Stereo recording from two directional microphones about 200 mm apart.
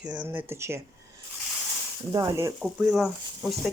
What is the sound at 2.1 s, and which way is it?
Speech, 20° right (ahead or behind).